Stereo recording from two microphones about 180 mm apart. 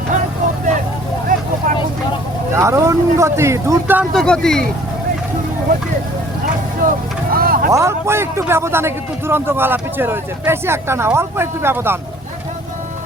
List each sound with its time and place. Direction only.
1.3 s vehicle: 50° right (ahead or behind)
2.6 s a man's voice: 15° right (ahead or behind)
4.1 s speech: 5° left (ahead or behind)
6.8 s vehicle: 55° right (ahead or behind)
7.7 s a man's voice: 15° right (ahead or behind)